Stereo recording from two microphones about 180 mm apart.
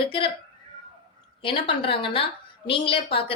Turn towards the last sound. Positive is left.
turn(degrees=30)  # may be behind; listen again after turning